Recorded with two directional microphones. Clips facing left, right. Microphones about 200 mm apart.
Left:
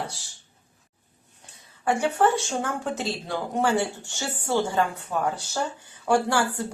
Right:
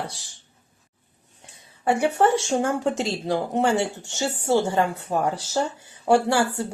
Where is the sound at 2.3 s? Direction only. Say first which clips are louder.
Right 5 dB; 25° right (ahead or behind).